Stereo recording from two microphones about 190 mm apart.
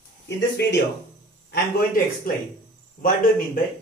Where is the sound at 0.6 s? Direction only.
60° left (ahead or behind).